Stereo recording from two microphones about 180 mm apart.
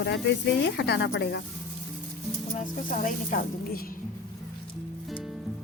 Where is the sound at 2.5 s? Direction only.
45° left (ahead or behind).